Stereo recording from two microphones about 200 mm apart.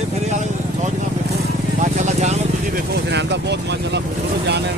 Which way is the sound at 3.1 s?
60° right (ahead or behind).